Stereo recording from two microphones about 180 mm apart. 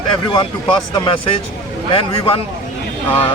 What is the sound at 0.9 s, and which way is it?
A man's voice, 30° left (ahead or behind).